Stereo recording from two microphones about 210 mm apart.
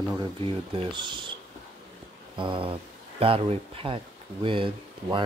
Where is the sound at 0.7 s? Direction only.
20° right (ahead or behind).